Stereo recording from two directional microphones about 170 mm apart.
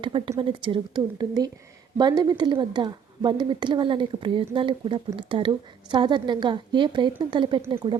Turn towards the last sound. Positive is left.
turn(degrees=-30)  # may be behind; listen again after turning